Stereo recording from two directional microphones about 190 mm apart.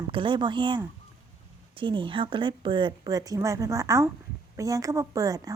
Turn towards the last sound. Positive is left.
turn(degrees=-20)  # may be behind; listen again after turning